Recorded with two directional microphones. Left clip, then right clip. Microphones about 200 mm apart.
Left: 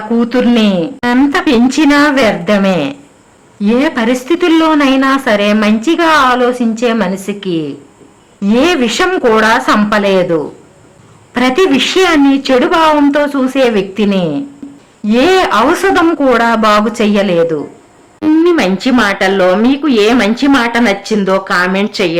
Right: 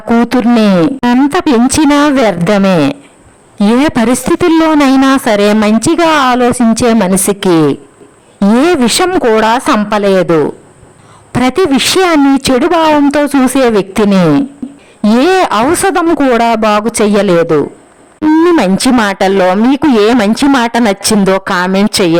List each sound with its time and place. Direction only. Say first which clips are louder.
0.3 s a woman's voice: right 2 dB; 50° right (ahead or behind)
11.3 s a woman's voice: even; 45° right (ahead or behind)
14.6 s a sound: right 5 dB; centre (ahead or behind)
15.0 s a woman's voice: right 1 dB; 45° right (ahead or behind)
18.2 s a sound: right 2 dB; centre (ahead or behind)
18.5 s a woman's voice: right 2 dB; 45° right (ahead or behind)
21.3 s a woman's voice: even; 45° right (ahead or behind)